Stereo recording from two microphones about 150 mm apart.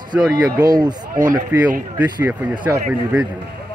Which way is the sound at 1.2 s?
60° right (ahead or behind).